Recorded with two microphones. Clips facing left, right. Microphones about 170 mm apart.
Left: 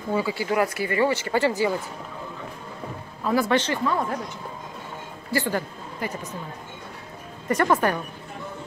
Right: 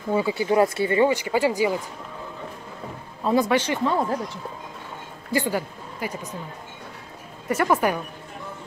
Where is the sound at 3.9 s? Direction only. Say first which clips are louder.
Right 4 dB; 25° right (ahead or behind).